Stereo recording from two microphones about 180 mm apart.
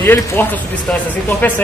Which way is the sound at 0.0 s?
10° left (ahead or behind).